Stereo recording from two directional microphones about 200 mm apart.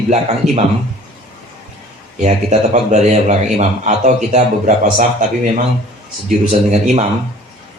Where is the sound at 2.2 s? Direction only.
35° right (ahead or behind).